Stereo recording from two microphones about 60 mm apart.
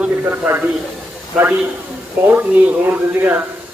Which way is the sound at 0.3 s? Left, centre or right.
Right.